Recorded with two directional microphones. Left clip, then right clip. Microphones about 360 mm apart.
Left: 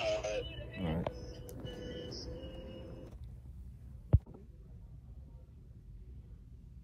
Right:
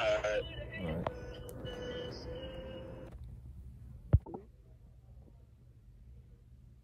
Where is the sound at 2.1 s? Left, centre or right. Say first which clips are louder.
Right 3 dB; centre.